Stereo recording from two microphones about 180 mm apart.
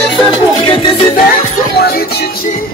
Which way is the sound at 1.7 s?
60° left (ahead or behind).